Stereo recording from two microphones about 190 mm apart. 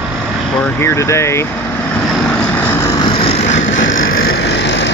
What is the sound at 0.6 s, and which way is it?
Speech, 10° left (ahead or behind).